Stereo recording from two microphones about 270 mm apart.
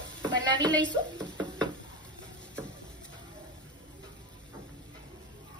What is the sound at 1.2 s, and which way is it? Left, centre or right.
Knock, centre.